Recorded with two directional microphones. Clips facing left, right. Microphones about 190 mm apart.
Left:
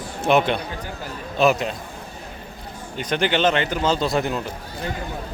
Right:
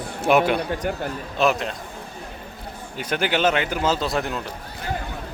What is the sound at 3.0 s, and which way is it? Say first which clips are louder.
Speech: left 1 dB; 5° right (ahead or behind).